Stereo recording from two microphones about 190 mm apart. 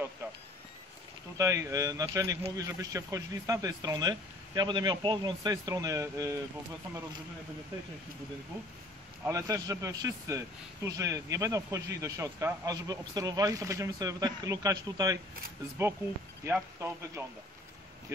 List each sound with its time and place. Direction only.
1.4 s speech: 15° right (ahead or behind)
9.2 s speech: 15° right (ahead or behind)
16.4 s speech: 15° right (ahead or behind)